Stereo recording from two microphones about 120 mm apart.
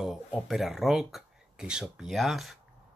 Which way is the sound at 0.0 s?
Centre (ahead or behind).